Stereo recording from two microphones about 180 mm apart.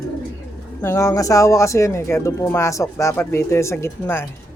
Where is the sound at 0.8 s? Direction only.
15° left (ahead or behind).